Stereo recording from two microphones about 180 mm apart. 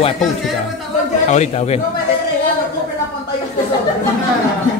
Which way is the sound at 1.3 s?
40° left (ahead or behind).